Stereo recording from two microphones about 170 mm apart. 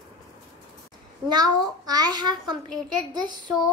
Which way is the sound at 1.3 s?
25° right (ahead or behind).